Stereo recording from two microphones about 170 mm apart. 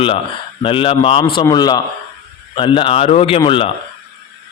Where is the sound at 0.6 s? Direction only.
30° left (ahead or behind).